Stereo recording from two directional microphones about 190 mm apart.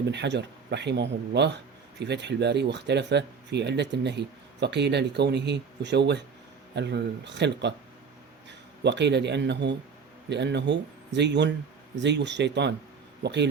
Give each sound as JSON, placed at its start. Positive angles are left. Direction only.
{"t": 0.1, "sound": "speech", "side_deg": -65}